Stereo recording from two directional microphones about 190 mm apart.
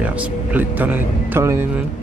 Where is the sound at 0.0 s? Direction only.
5° right (ahead or behind).